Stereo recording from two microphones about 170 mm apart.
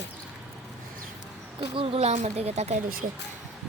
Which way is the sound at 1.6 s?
35° right (ahead or behind).